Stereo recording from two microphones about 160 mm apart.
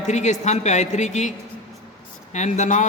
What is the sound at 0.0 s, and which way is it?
A man's voice, 45° left (ahead or behind).